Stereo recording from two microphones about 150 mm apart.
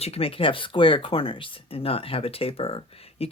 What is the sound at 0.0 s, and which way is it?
Speech, 40° left (ahead or behind).